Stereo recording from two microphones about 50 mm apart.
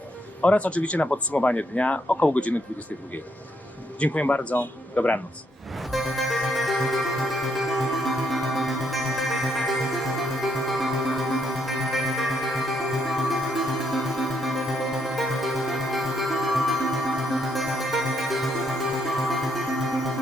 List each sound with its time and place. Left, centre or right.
0.4 s speech: left
4.0 s speech: left
5.9 s music: centre